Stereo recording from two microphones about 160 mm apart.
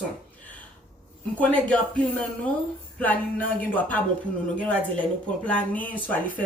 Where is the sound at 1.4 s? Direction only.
5° left (ahead or behind).